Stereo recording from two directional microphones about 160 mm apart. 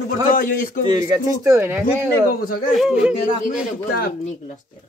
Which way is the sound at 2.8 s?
5° right (ahead or behind).